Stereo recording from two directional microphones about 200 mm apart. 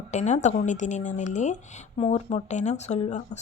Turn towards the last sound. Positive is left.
turn(degrees=35)  # may be behind; listen again after turning